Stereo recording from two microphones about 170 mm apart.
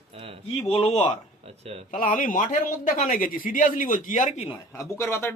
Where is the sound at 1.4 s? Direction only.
35° right (ahead or behind).